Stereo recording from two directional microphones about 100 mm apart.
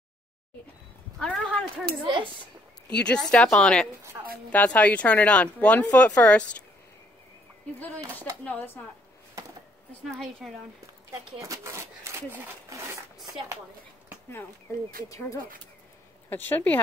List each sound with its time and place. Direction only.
1.2 s speech: 10° left (ahead or behind)
2.0 s speech: 55° right (ahead or behind)
3.0 s speech: 10° left (ahead or behind)
8.5 s speech: 15° left (ahead or behind)
10.0 s a woman's voice: centre (ahead or behind)
11.4 s speech: 30° right (ahead or behind)
16.3 s speech: 20° left (ahead or behind)